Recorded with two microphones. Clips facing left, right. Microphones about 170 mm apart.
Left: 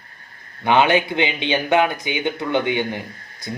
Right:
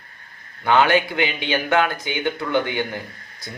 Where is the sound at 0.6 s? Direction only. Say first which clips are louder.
Left 1 dB; 20° left (ahead or behind).